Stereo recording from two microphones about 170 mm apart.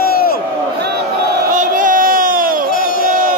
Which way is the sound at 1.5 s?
50° right (ahead or behind).